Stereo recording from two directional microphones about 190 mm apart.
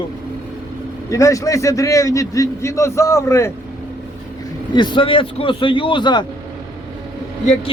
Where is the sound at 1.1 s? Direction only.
15° left (ahead or behind).